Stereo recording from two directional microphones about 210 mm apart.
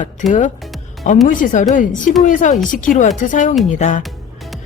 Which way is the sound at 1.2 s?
35° left (ahead or behind).